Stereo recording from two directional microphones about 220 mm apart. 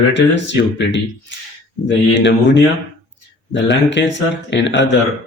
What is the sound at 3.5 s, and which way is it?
Speech, 55° left (ahead or behind).